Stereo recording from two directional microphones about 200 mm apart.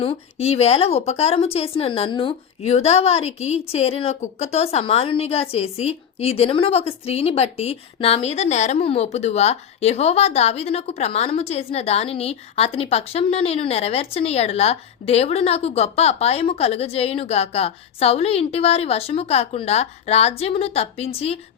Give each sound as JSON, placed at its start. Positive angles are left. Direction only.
{"t": 0.0, "sound": "a woman's voice", "side_deg": 30}